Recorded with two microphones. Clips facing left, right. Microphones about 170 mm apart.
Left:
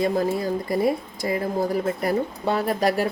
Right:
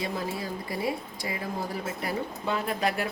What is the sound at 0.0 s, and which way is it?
Speech, 45° left (ahead or behind).